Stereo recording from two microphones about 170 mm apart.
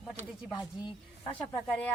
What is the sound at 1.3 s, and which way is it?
Speech, 10° left (ahead or behind).